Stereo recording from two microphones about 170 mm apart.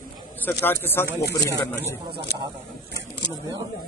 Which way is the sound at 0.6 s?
10° left (ahead or behind).